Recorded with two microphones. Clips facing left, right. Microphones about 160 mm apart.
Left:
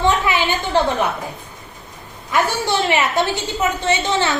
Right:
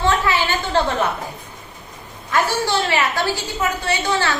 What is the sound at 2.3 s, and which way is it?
A woman's voice, 20° left (ahead or behind).